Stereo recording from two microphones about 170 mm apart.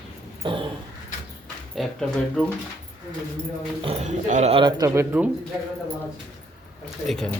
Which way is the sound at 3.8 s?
40° right (ahead or behind).